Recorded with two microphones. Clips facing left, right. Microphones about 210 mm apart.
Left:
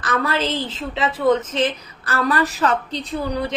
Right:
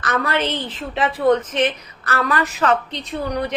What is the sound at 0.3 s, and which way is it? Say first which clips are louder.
A woman's voice: even; 25° left (ahead or behind).